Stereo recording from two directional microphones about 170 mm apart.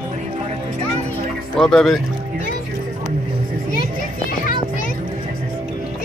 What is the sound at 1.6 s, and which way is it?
Speech, centre (ahead or behind).